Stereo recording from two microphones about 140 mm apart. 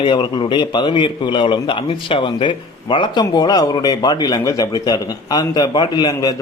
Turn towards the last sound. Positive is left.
turn(degrees=30)  # may be behind; listen again after turning